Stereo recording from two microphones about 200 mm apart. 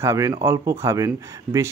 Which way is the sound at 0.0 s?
15° right (ahead or behind).